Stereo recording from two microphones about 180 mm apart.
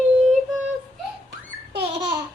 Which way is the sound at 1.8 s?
30° right (ahead or behind).